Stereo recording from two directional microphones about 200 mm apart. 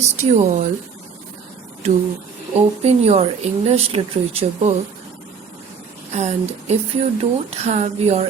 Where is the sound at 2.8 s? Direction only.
30° right (ahead or behind).